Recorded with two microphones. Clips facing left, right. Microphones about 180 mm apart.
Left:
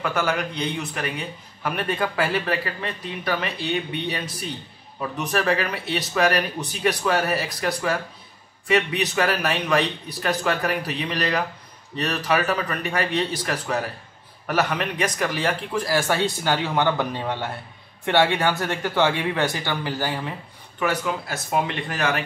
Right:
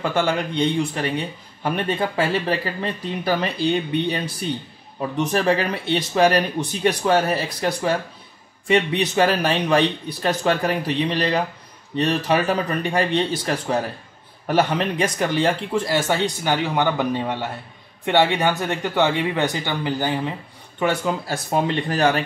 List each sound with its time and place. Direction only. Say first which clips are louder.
0.0 s a man's voice: right 3 dB; 30° right (ahead or behind)